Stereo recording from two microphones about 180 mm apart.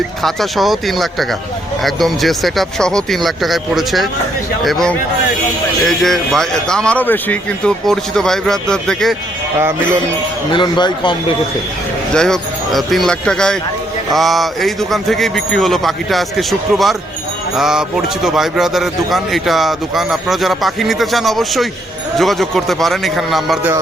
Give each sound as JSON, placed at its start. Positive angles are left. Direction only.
{"t": 0.2, "sound": "a man's voice", "side_deg": 0}
{"t": 10.5, "sound": "a man's voice", "side_deg": 25}
{"t": 12.1, "sound": "a man's voice", "side_deg": 5}